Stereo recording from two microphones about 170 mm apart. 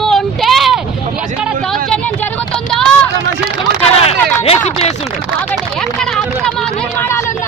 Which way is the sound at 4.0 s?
35° left (ahead or behind).